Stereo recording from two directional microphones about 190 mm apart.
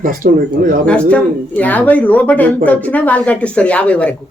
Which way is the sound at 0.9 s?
5° left (ahead or behind).